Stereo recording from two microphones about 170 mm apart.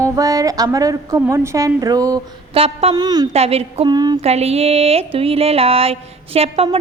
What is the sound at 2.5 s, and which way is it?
Speech, 35° right (ahead or behind).